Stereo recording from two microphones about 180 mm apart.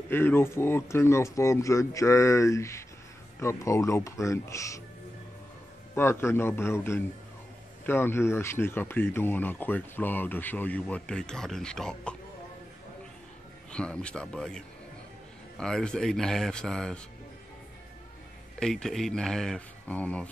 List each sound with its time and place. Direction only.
0.1 s speech: 10° left (ahead or behind)
5.9 s speech: 15° left (ahead or behind)
13.7 s speech: 5° left (ahead or behind)
18.6 s speech: 5° left (ahead or behind)